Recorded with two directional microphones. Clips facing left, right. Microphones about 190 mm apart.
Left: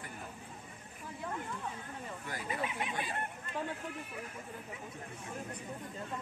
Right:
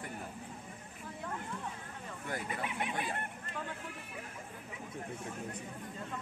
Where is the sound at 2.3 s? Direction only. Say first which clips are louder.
Even; 55° right (ahead or behind).